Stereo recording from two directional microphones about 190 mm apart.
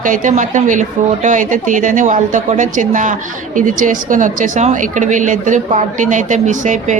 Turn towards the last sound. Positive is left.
turn(degrees=-40)  # may be behind; listen again after turning